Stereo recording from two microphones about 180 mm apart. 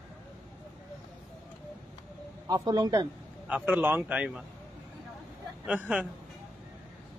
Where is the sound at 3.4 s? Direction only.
10° right (ahead or behind).